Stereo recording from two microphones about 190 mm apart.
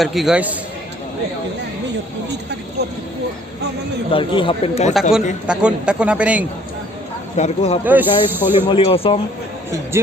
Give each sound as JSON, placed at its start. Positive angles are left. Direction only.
{"t": 0.0, "sound": "a man's voice", "side_deg": 0}
{"t": 4.1, "sound": "speech", "side_deg": 25}
{"t": 5.5, "sound": "speech", "side_deg": -5}
{"t": 7.3, "sound": "speech", "side_deg": 35}
{"t": 7.9, "sound": "speech", "side_deg": -10}
{"t": 8.7, "sound": "speech", "side_deg": 30}
{"t": 9.9, "sound": "speech", "side_deg": -15}